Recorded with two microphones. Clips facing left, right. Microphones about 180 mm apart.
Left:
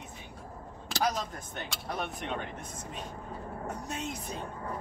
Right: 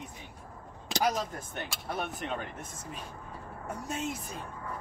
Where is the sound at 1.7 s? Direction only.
Centre (ahead or behind).